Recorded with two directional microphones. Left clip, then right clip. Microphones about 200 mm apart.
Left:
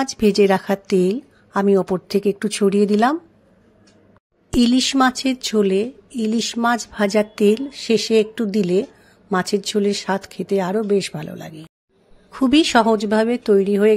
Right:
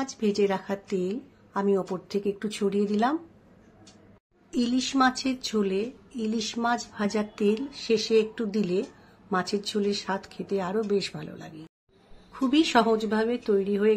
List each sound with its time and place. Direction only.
0.0 s speech: 40° left (ahead or behind)
4.6 s speech: 45° left (ahead or behind)